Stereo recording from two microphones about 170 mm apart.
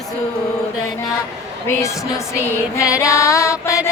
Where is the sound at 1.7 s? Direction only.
15° left (ahead or behind).